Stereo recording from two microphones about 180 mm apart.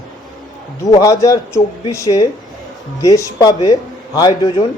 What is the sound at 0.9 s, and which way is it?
Speech, 20° left (ahead or behind).